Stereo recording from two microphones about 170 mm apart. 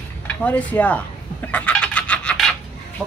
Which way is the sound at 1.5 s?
5° left (ahead or behind).